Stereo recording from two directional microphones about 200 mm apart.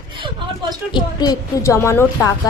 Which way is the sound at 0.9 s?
20° left (ahead or behind).